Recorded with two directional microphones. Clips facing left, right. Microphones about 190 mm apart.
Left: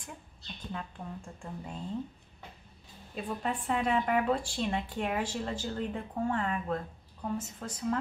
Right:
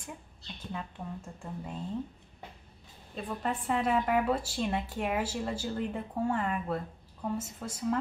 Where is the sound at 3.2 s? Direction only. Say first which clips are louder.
Even; centre (ahead or behind).